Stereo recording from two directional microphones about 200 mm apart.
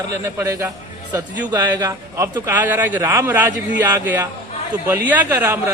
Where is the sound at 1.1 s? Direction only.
15° right (ahead or behind).